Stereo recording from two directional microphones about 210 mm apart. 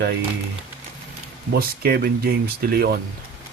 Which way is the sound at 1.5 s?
45° right (ahead or behind).